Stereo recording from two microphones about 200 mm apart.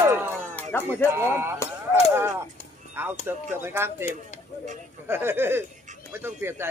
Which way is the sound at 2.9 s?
10° right (ahead or behind).